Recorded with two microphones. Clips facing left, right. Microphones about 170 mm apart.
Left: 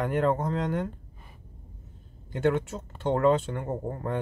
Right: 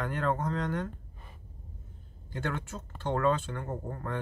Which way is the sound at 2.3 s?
20° left (ahead or behind).